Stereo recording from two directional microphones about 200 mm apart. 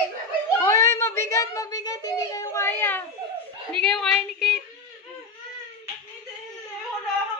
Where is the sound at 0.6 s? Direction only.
15° left (ahead or behind).